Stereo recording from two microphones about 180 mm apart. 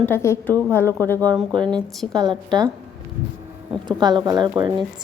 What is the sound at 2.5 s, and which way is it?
Speech, 20° right (ahead or behind).